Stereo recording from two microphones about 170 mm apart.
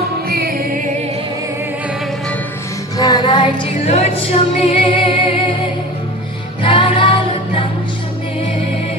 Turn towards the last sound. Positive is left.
turn(degrees=30)  # may be behind; listen again after turning